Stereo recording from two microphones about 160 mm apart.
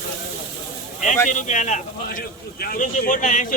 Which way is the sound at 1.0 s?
50° left (ahead or behind).